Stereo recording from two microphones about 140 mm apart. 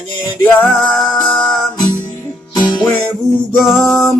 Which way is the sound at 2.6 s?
30° left (ahead or behind).